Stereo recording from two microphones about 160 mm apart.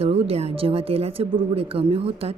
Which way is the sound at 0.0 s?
40° right (ahead or behind).